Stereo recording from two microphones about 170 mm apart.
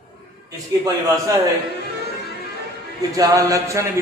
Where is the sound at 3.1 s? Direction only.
20° right (ahead or behind).